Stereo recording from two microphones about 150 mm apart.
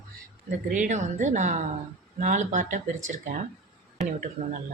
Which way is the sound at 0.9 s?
55° right (ahead or behind).